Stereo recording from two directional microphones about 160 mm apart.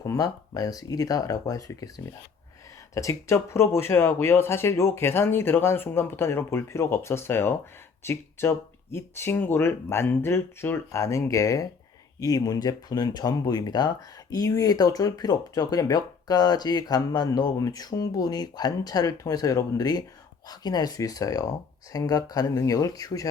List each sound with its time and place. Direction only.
0.0 s speech: 20° left (ahead or behind)
2.9 s speech: 20° left (ahead or behind)